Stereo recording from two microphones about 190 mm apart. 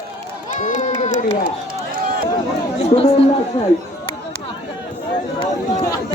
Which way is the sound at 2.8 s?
35° left (ahead or behind).